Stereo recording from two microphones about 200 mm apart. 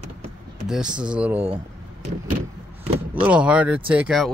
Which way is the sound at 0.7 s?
5° right (ahead or behind).